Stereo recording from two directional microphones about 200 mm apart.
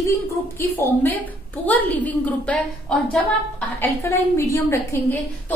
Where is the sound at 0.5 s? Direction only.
10° left (ahead or behind).